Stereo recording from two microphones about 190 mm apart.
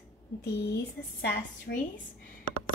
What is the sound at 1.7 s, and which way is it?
Speech, 55° left (ahead or behind).